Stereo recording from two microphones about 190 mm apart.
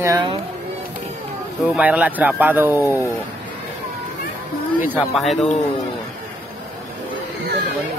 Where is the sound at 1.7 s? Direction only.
5° right (ahead or behind).